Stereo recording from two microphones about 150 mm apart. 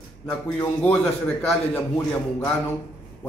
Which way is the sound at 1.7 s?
10° left (ahead or behind).